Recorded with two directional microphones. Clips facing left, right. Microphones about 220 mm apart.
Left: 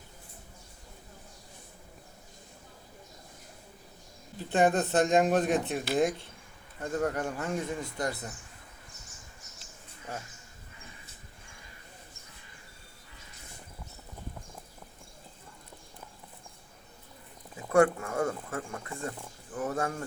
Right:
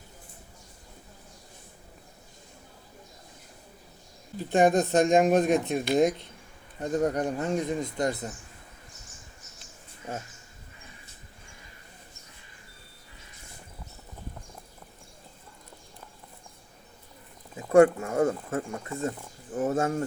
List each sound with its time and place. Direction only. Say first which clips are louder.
4.4 s speech: right 4 dB; 15° right (ahead or behind)
17.6 s speech: right 5 dB; 25° right (ahead or behind)